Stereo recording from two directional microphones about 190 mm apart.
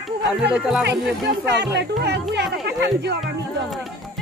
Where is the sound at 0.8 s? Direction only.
60° right (ahead or behind).